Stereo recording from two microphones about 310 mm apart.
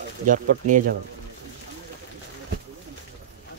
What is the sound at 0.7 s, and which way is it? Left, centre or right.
Speech, right.